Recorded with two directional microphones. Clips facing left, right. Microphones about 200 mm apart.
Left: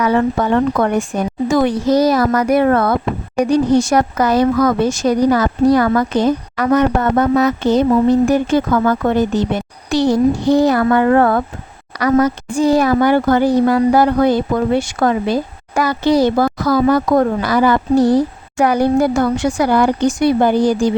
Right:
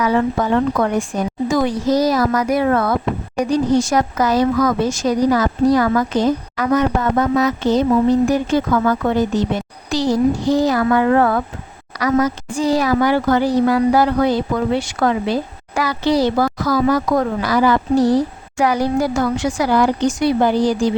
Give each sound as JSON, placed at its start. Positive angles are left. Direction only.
{"t": 0.0, "sound": "speech", "side_deg": 60}
{"t": 10.9, "sound": "speech", "side_deg": 50}